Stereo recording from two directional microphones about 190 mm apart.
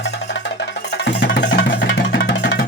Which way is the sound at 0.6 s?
65° left (ahead or behind).